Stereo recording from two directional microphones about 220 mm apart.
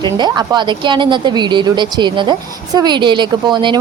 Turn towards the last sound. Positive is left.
turn(degrees=-20)  # may be behind; listen again after turning